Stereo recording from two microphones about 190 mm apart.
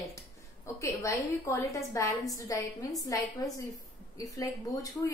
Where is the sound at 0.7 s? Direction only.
15° left (ahead or behind).